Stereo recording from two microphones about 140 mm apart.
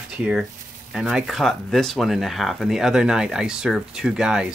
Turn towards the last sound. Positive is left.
turn(degrees=-5)  # may be behind; listen again after turning